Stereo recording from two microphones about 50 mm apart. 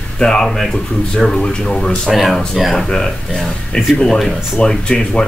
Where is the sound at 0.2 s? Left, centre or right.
Centre.